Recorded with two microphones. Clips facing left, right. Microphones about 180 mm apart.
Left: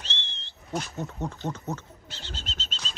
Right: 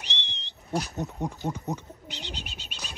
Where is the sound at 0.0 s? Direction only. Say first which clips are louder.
Right 1 dB; 15° right (ahead or behind).